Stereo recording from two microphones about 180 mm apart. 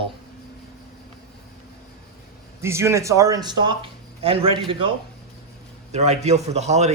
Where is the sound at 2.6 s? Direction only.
15° right (ahead or behind); by 6.9 s 40° right (ahead or behind).